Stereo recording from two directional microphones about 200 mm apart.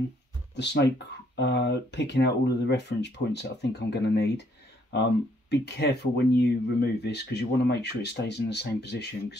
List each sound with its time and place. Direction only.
0.6 s speech: 60° left (ahead or behind)
5.5 s speech: 55° left (ahead or behind)